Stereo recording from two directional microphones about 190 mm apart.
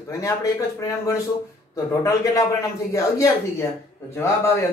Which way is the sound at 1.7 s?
15° left (ahead or behind).